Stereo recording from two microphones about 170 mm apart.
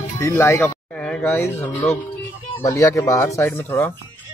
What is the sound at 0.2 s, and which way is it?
Speech, 15° left (ahead or behind).